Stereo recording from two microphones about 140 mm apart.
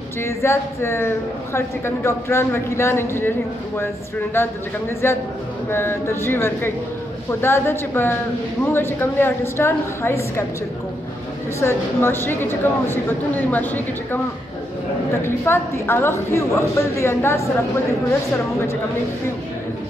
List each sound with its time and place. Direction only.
0.2 s a woman's voice: 20° left (ahead or behind)
11.6 s a woman's voice: 15° left (ahead or behind)
15.2 s a woman's voice: 15° left (ahead or behind)